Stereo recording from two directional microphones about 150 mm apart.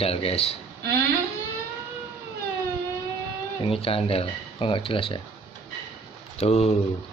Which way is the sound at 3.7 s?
40° left (ahead or behind).